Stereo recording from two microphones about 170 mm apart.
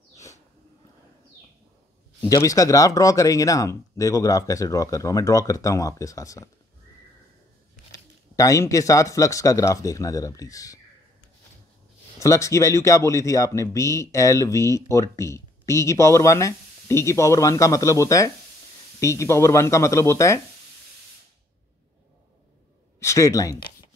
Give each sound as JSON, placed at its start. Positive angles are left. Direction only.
{"t": 0.1, "sound": "a sound", "side_deg": 20}
{"t": 2.2, "sound": "speech", "side_deg": 20}
{"t": 8.4, "sound": "speech", "side_deg": 20}
{"t": 12.2, "sound": "speech", "side_deg": 20}
{"t": 22.9, "sound": "speech", "side_deg": 15}